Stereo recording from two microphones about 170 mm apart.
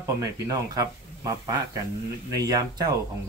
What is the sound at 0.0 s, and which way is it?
Speech, 20° right (ahead or behind).